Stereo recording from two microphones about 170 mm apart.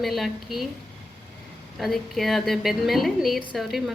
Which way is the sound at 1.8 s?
Centre (ahead or behind).